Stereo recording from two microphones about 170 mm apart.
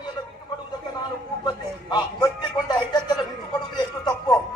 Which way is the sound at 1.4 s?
25° left (ahead or behind).